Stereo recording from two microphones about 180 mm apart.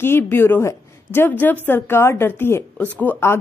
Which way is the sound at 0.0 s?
15° left (ahead or behind).